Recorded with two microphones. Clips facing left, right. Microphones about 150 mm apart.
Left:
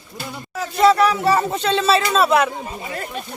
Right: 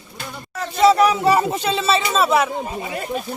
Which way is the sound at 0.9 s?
20° right (ahead or behind).